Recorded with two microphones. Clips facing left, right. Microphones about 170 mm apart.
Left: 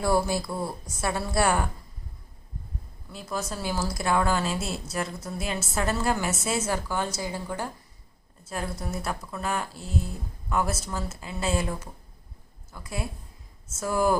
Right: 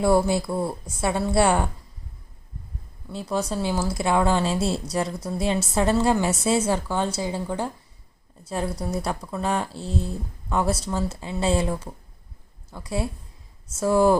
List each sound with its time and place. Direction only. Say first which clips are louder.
0.0 s a woman's voice: right 5 dB; 25° right (ahead or behind)
3.1 s a woman's voice: right 6 dB; 30° right (ahead or behind)